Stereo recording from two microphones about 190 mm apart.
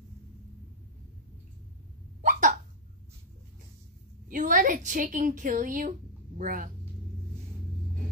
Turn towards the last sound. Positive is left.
turn(degrees=-45)  # may be behind; listen again after turning